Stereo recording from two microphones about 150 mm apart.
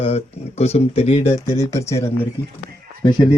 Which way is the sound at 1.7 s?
20° left (ahead or behind).